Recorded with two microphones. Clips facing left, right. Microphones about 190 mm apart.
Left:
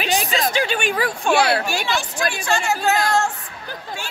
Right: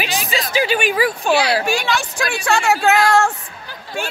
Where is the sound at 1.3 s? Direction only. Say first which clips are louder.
Even; 55° left (ahead or behind).